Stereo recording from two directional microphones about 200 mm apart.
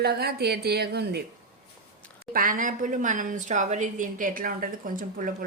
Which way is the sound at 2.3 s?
45° right (ahead or behind).